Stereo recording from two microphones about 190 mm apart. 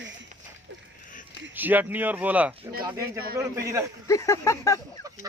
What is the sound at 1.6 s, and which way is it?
Speech, 10° right (ahead or behind).